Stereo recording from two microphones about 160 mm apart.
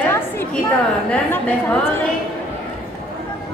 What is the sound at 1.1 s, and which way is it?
Speech, 10° left (ahead or behind).